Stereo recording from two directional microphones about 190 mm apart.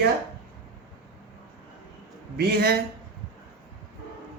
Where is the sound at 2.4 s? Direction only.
55° right (ahead or behind).